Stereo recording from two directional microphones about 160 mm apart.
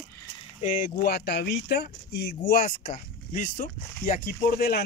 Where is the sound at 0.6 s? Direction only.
60° left (ahead or behind).